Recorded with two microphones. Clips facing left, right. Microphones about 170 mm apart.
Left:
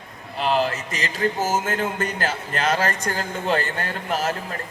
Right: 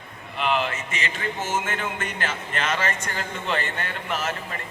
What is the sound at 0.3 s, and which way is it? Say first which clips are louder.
Speech: left 3 dB; 35° left (ahead or behind).